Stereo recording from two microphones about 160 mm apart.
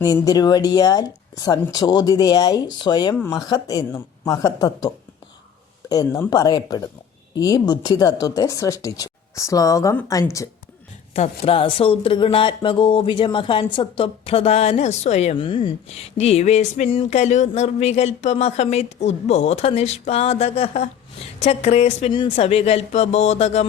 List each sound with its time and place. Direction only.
0.3 s speech: 25° left (ahead or behind)
5.9 s speech: 25° left (ahead or behind)
11.1 s speech: 40° left (ahead or behind)
15.4 s speech: 30° left (ahead or behind)